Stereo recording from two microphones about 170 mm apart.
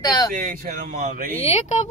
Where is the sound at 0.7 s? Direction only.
55° right (ahead or behind).